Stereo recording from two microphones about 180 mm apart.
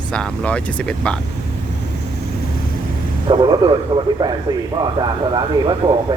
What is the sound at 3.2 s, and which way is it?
Speech, 25° right (ahead or behind).